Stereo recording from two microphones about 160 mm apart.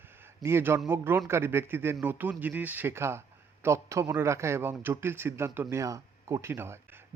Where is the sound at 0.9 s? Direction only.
15° right (ahead or behind).